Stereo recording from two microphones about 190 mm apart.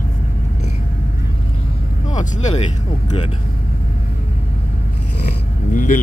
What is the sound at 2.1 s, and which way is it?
Vehicle, 40° left (ahead or behind).